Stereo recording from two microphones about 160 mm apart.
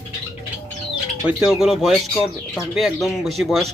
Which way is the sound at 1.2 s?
5° right (ahead or behind).